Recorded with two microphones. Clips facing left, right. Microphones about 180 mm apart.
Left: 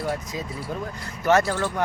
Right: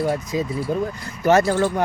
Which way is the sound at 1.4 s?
20° right (ahead or behind).